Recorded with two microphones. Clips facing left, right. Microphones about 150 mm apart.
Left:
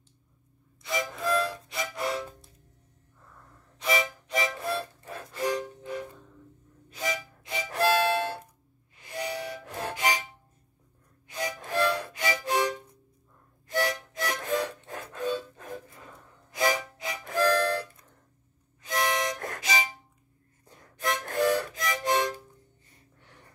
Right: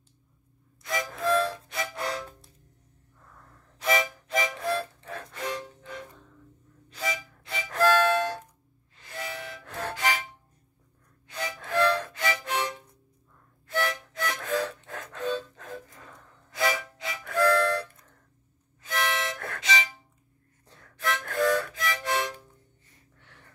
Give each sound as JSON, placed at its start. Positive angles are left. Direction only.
{"t": 0.8, "sound": "music", "side_deg": 0}
{"t": 3.8, "sound": "music", "side_deg": 0}
{"t": 9.3, "sound": "music", "side_deg": 35}
{"t": 9.7, "sound": "music", "side_deg": 15}
{"t": 11.2, "sound": "music", "side_deg": 15}
{"t": 13.7, "sound": "music", "side_deg": 15}
{"t": 18.8, "sound": "harmonica", "side_deg": 15}
{"t": 19.1, "sound": "music", "side_deg": 15}
{"t": 23.2, "sound": "gasp", "side_deg": 10}